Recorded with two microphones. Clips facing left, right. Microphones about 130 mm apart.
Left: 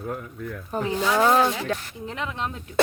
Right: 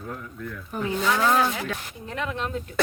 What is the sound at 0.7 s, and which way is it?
Speech, 25° left (ahead or behind).